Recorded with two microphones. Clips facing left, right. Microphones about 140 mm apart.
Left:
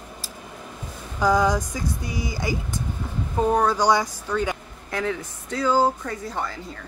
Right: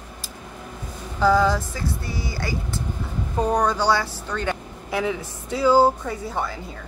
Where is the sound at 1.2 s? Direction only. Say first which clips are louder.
Right 1 dB; 15° left (ahead or behind).